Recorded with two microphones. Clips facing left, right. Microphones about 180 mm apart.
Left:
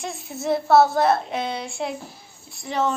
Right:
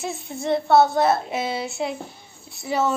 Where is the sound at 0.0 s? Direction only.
Centre (ahead or behind).